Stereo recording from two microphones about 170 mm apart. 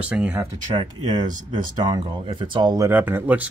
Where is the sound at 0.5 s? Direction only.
25° right (ahead or behind).